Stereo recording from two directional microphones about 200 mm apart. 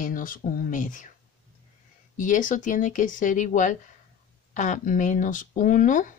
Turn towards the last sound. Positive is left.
turn(degrees=40)  # may be behind; listen again after turning